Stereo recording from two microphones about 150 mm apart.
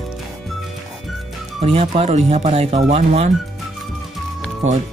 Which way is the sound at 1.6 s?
40° right (ahead or behind).